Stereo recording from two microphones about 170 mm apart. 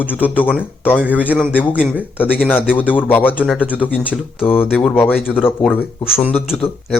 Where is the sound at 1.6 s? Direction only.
10° left (ahead or behind).